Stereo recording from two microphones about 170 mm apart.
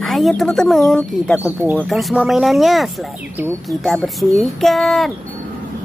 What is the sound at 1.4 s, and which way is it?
Speech, 10° right (ahead or behind).